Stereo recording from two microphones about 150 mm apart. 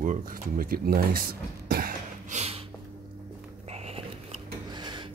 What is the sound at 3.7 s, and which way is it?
Biting, 45° right (ahead or behind).